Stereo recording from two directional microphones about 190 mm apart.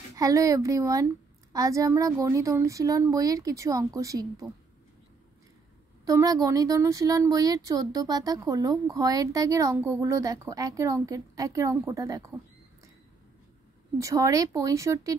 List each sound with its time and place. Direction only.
0.1 s speech: 15° right (ahead or behind)
6.0 s speech: 20° right (ahead or behind)
13.9 s speech: 15° right (ahead or behind)